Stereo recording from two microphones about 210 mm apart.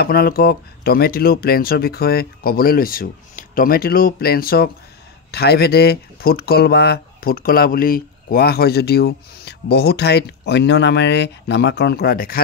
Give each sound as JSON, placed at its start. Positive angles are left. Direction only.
{"t": 0.0, "sound": "speech", "side_deg": 45}